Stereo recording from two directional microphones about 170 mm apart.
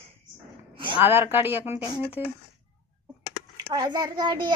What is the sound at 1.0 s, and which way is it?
Speech, 10° right (ahead or behind).